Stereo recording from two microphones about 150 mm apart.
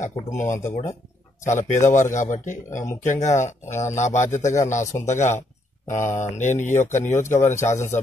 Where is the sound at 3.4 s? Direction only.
20° left (ahead or behind).